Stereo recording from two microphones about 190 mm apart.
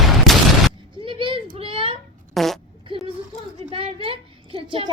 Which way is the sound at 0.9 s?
25° right (ahead or behind).